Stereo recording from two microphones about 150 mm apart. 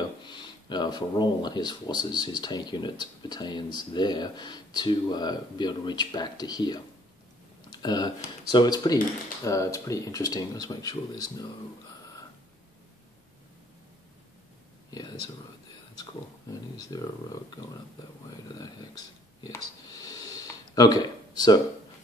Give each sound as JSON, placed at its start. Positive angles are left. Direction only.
{"t": 0.2, "sound": "speech", "side_deg": 30}
{"t": 14.9, "sound": "speech", "side_deg": 25}
{"t": 16.7, "sound": "speech", "side_deg": 25}
{"t": 19.4, "sound": "a sound", "side_deg": 25}